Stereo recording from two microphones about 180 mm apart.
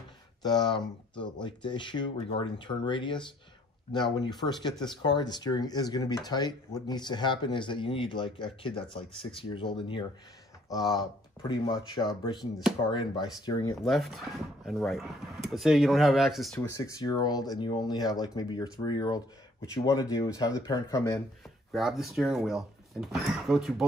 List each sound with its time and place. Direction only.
0.4 s speech: 25° left (ahead or behind)
13.8 s speech: centre (ahead or behind)
16.7 s speech: 20° left (ahead or behind)
21.7 s speech: centre (ahead or behind)